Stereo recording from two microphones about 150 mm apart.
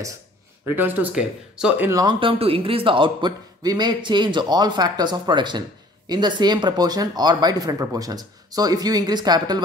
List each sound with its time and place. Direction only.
0.7 s speech: 15° right (ahead or behind)
1.9 s speech: 20° right (ahead or behind)
2.1 s a man's voice: 35° right (ahead or behind)